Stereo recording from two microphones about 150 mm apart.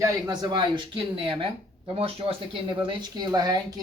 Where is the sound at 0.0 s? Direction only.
30° right (ahead or behind).